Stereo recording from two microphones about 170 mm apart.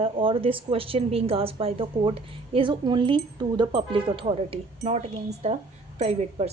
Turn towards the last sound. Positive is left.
turn(degrees=-40)  # may be behind; listen again after turning